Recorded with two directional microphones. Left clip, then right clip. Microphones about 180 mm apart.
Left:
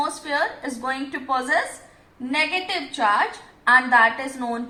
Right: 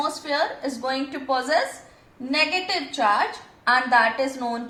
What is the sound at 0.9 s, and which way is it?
A woman's voice, 60° right (ahead or behind).